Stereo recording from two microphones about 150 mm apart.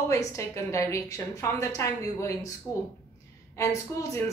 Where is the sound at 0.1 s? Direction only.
20° left (ahead or behind).